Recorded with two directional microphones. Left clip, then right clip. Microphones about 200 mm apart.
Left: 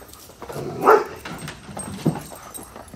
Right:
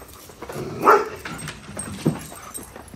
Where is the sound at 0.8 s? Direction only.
50° left (ahead or behind).